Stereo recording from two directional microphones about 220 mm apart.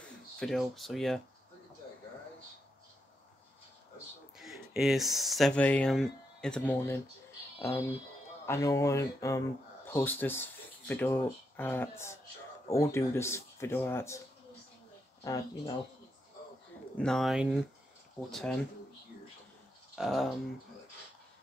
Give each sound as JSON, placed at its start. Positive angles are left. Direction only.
{"t": 0.0, "sound": "speech", "side_deg": 0}
{"t": 4.4, "sound": "speech", "side_deg": 0}
{"t": 8.5, "sound": "speech", "side_deg": 15}
{"t": 15.2, "sound": "speech", "side_deg": 15}
{"t": 16.9, "sound": "speech", "side_deg": 5}
{"t": 20.0, "sound": "speech", "side_deg": 0}